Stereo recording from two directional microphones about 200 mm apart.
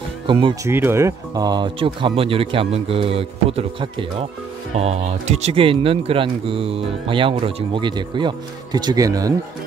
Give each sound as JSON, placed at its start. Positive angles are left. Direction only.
{"t": 0.3, "sound": "speech", "side_deg": -25}
{"t": 0.7, "sound": "speech", "side_deg": -10}